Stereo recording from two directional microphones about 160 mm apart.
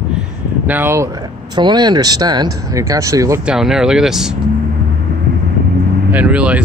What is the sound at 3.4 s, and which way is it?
Speech, 5° right (ahead or behind).